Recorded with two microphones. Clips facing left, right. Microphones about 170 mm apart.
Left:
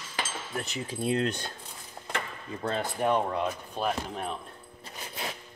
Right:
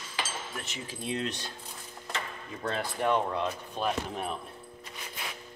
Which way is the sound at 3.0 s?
20° left (ahead or behind).